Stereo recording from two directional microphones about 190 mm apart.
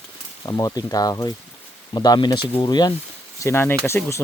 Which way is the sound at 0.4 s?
20° left (ahead or behind).